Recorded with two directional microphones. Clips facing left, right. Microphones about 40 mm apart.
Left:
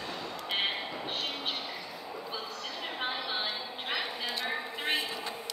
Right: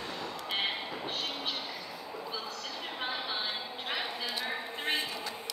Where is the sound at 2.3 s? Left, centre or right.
Left.